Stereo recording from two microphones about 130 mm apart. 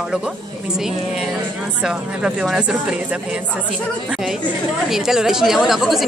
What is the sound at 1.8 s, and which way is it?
Speech, centre (ahead or behind).